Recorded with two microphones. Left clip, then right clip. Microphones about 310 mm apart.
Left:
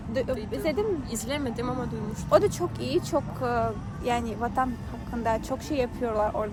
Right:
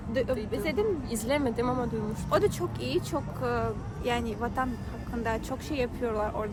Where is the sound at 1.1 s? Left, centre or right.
Centre.